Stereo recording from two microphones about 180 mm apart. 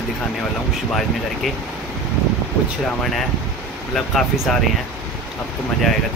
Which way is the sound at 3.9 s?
Centre (ahead or behind).